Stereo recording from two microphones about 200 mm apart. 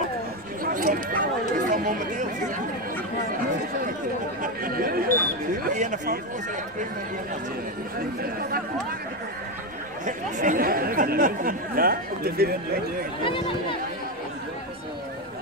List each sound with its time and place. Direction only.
0.7 s chatter: 45° right (ahead or behind)
4.4 s speech: 45° right (ahead or behind)
8.2 s speech: 50° right (ahead or behind)
10.0 s speech: 40° right (ahead or behind)
13.2 s speech: 25° left (ahead or behind)